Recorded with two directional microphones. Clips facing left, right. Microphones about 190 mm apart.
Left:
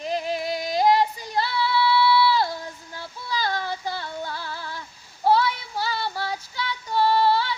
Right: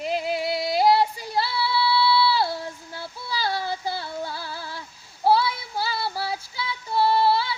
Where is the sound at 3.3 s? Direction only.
10° right (ahead or behind).